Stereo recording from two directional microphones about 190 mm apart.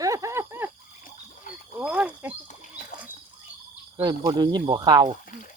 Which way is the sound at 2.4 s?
40° left (ahead or behind).